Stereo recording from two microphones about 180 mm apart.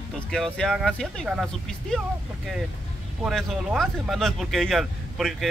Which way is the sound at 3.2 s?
Centre (ahead or behind).